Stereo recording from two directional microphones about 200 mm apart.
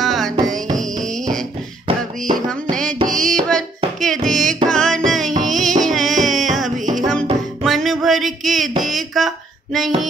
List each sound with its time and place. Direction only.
0.0 s music: centre (ahead or behind)
2.3 s music: 25° right (ahead or behind)
2.7 s music: 5° left (ahead or behind)
6.8 s music: 40° right (ahead or behind)
7.6 s a sound: centre (ahead or behind)